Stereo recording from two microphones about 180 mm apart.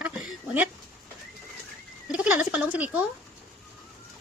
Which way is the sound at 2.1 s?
5° right (ahead or behind).